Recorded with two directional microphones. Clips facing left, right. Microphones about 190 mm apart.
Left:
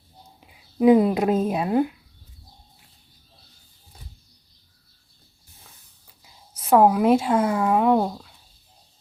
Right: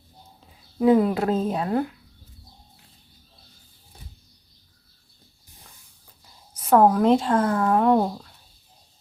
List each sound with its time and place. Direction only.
0.3 s speech: 15° left (ahead or behind)
6.2 s speech: 5° left (ahead or behind)